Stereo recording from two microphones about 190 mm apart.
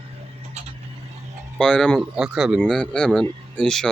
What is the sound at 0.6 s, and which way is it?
Vehicle, 35° right (ahead or behind).